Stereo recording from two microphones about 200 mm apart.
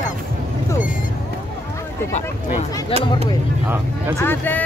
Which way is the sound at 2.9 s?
25° left (ahead or behind).